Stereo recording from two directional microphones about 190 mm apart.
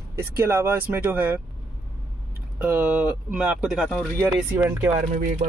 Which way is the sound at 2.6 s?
10° right (ahead or behind).